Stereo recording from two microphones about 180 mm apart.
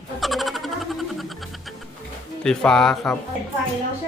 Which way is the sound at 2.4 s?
5° left (ahead or behind).